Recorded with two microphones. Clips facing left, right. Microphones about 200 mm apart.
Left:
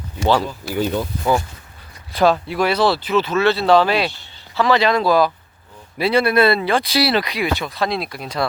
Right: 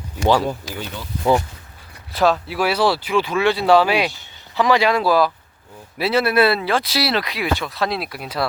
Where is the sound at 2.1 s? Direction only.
Centre (ahead or behind).